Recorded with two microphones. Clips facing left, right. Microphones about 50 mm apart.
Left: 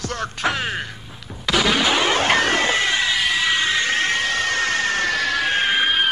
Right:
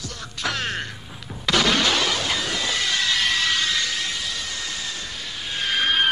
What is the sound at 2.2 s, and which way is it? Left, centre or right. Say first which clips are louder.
Music: left 8 dB; left.